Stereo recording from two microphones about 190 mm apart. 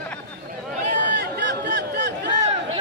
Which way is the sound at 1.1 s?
60° right (ahead or behind).